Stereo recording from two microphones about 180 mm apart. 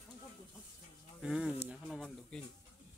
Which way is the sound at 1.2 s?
5° right (ahead or behind).